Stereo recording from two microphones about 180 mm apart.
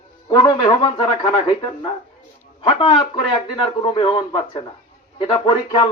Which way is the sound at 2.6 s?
30° left (ahead or behind).